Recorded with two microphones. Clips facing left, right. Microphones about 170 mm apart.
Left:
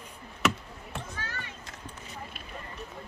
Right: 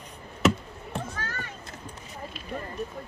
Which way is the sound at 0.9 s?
45° right (ahead or behind).